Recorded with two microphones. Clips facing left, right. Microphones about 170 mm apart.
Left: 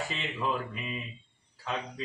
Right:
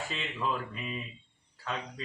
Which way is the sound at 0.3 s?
5° left (ahead or behind).